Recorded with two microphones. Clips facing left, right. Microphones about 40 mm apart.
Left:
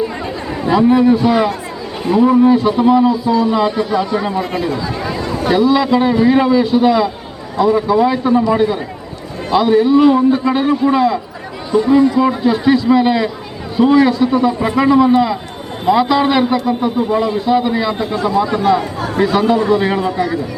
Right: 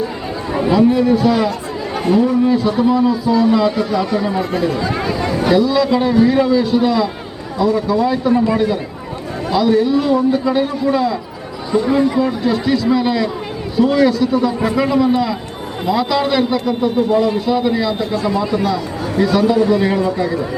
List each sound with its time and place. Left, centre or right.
0.7 s a man's voice: left
2.2 s a man's voice: centre
4.1 s speech: left
4.8 s speech: right
5.5 s a man's voice: left
11.7 s speech: centre
12.2 s a man's voice: left
18.3 s speech: left
19.2 s a man's voice: left